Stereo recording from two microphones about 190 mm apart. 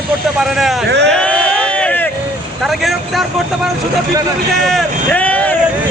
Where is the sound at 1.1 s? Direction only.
5° left (ahead or behind).